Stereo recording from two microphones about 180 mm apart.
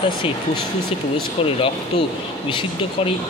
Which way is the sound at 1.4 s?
30° left (ahead or behind).